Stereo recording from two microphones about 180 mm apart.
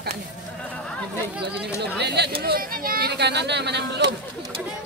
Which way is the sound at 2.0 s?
65° right (ahead or behind).